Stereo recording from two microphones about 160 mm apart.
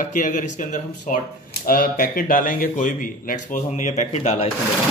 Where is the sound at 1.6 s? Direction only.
65° left (ahead or behind); by 4.5 s 40° left (ahead or behind).